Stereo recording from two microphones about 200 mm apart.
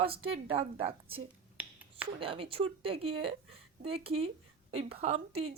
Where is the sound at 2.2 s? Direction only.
25° right (ahead or behind).